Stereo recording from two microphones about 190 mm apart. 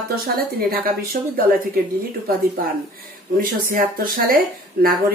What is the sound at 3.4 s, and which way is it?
Speech, 50° right (ahead or behind).